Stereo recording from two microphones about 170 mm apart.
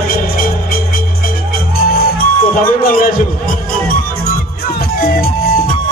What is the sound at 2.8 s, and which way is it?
Speech, 55° left (ahead or behind).